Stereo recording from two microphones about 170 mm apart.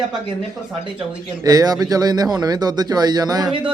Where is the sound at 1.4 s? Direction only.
20° right (ahead or behind).